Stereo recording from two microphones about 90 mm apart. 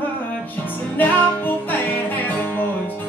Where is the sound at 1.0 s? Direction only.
20° left (ahead or behind).